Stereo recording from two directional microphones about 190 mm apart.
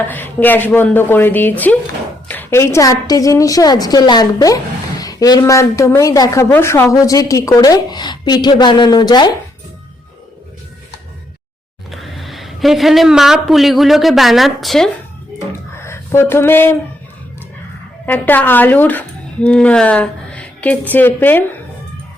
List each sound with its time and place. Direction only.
0.1 s a woman's voice: 10° left (ahead or behind)
11.9 s speech: centre (ahead or behind)
15.4 s a sound: 15° left (ahead or behind)
18.0 s speech: 10° left (ahead or behind)